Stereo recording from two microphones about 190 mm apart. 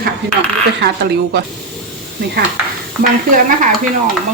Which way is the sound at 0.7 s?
60° right (ahead or behind).